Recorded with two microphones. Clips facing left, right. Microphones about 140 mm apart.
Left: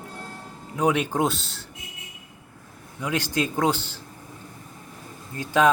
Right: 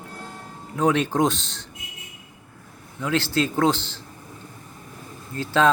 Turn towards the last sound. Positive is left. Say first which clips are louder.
# even
turn(degrees=15)  # may be behind; listen again after turning